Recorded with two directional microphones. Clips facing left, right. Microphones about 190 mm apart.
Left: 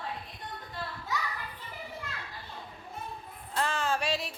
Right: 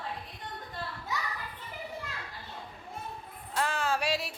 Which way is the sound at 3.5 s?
10° right (ahead or behind).